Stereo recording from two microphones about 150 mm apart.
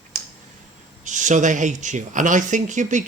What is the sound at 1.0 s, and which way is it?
Speech, 55° right (ahead or behind).